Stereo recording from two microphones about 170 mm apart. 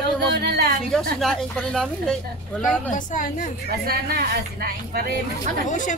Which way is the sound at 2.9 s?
50° left (ahead or behind).